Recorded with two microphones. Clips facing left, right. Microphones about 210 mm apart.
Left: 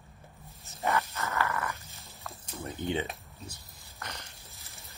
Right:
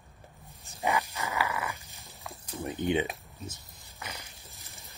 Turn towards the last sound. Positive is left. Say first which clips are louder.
# even
turn(degrees=-15)  # may be behind; listen again after turning